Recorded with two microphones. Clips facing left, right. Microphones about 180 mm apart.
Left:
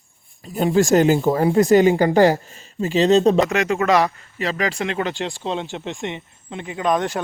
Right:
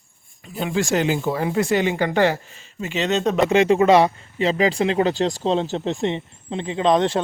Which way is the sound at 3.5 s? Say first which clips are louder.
Right 4 dB; 30° right (ahead or behind).